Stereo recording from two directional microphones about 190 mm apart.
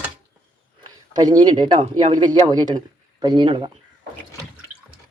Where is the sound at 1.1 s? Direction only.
20° right (ahead or behind).